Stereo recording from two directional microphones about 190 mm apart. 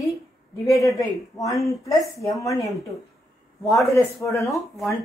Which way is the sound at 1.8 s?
15° left (ahead or behind).